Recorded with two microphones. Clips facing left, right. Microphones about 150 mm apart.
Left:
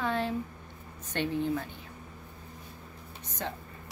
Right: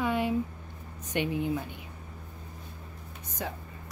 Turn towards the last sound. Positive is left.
turn(degrees=-10)  # may be behind; listen again after turning